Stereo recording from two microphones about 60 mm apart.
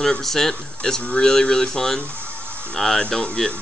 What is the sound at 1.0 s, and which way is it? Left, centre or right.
Speech, left.